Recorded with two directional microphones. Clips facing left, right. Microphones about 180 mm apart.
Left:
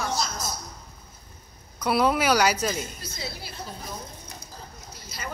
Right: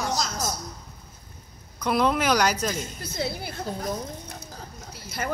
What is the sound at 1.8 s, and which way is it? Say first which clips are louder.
A woman's voice: even; 5° left (ahead or behind).